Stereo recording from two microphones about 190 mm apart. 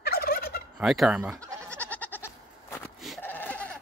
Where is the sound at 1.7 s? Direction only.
5° left (ahead or behind).